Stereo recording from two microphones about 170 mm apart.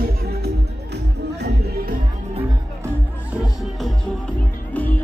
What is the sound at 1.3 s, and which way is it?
Music, 75° right (ahead or behind).